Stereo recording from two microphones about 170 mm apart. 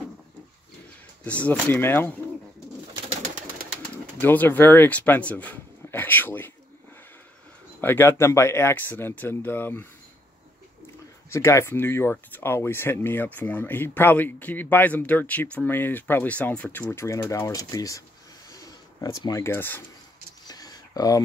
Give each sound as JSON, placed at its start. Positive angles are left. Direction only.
{"t": 1.2, "sound": "speech", "side_deg": 10}
{"t": 3.1, "sound": "bird", "side_deg": -50}
{"t": 4.2, "sound": "speech", "side_deg": 10}
{"t": 7.8, "sound": "speech", "side_deg": 10}
{"t": 11.2, "sound": "speech", "side_deg": 15}
{"t": 18.5, "sound": "bird", "side_deg": 20}
{"t": 20.4, "sound": "a sound", "side_deg": 20}